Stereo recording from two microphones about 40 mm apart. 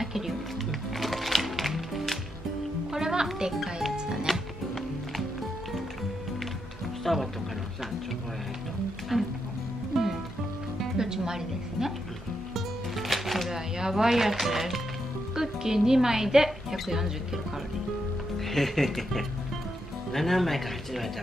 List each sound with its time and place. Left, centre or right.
0.7 s music: centre
2.9 s music: centre
3.3 s speech: centre
3.9 s music: centre
4.3 s music: centre
7.0 s speech: centre
9.1 s music: centre
11.0 s a woman's voice: centre
12.5 s music: centre
13.5 s speech: centre
18.4 s speech: centre